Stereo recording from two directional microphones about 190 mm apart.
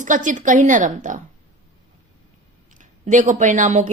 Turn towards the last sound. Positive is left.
turn(degrees=-40)  # may be behind; listen again after turning